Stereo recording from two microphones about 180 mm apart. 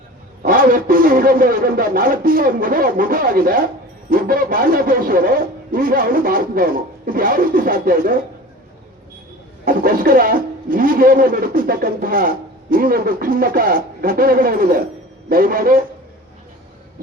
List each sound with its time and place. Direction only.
0.4 s a man's voice: 50° right (ahead or behind)
9.6 s a man's voice: 50° right (ahead or behind)